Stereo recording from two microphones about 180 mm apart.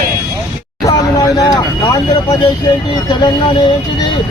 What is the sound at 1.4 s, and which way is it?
Vehicle, 20° left (ahead or behind).